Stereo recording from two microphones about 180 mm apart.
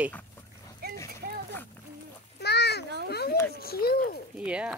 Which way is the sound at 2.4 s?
65° left (ahead or behind).